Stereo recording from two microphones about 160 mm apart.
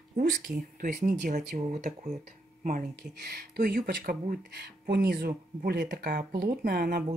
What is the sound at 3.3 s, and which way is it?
Speech, 75° right (ahead or behind).